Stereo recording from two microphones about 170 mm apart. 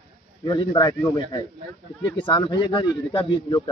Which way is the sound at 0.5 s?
25° left (ahead or behind).